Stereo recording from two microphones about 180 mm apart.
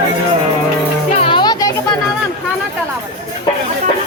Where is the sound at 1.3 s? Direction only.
20° left (ahead or behind).